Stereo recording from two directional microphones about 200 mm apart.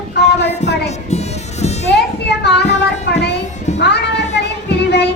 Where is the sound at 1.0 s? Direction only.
35° left (ahead or behind).